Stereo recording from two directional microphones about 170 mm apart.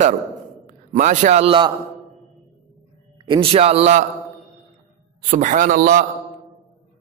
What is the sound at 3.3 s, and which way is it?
Speech, 35° right (ahead or behind).